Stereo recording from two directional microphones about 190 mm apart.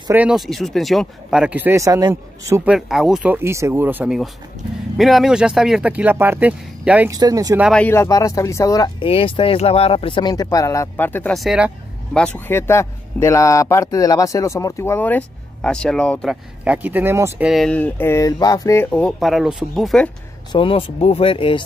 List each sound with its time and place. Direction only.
0.1 s speech: 5° right (ahead or behind)
2.7 s speech: 5° right (ahead or behind)
7.1 s speech: 20° right (ahead or behind)
7.6 s speech: 5° left (ahead or behind)
7.9 s speech: 15° left (ahead or behind)
11.3 s speech: 5° right (ahead or behind)
16.6 s speech: 10° right (ahead or behind)
17.5 s speech: centre (ahead or behind)
20.5 s speech: 30° left (ahead or behind)